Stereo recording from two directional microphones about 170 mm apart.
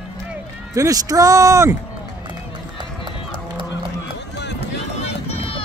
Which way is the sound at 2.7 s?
30° right (ahead or behind).